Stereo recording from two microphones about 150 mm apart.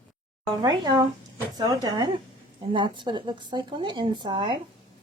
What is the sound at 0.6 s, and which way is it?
A woman's voice, 25° right (ahead or behind).